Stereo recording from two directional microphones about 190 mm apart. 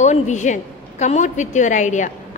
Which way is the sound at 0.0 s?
40° left (ahead or behind).